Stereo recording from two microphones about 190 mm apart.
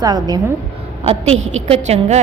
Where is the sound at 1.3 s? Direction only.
35° right (ahead or behind).